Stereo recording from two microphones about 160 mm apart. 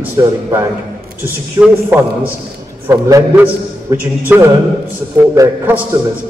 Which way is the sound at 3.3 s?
10° right (ahead or behind).